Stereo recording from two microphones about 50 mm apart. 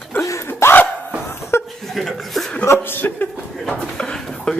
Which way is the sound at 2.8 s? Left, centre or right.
Left.